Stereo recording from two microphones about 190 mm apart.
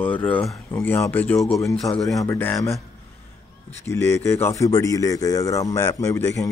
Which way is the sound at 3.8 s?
15° left (ahead or behind).